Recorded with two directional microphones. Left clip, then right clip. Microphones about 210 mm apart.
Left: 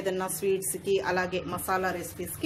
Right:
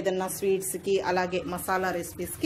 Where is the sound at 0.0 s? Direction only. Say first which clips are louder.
Right 2 dB; 15° right (ahead or behind).